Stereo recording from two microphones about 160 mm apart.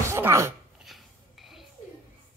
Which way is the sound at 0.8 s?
Centre (ahead or behind).